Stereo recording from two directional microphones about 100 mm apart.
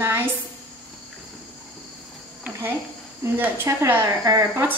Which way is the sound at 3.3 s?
15° right (ahead or behind).